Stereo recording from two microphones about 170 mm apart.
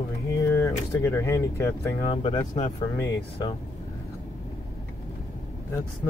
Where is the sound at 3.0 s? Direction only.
20° left (ahead or behind).